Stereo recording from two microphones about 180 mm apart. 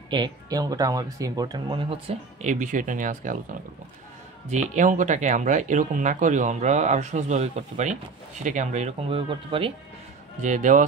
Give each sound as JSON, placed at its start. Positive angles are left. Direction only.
{"t": 0.1, "sound": "speech", "side_deg": -20}
{"t": 4.5, "sound": "speech", "side_deg": -40}
{"t": 10.4, "sound": "speech", "side_deg": -45}